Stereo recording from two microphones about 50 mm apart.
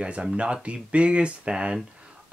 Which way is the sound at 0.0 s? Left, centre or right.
Right.